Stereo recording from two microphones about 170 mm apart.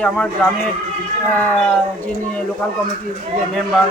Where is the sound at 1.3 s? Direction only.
10° left (ahead or behind).